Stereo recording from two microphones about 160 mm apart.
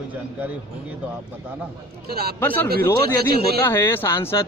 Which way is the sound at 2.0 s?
80° right.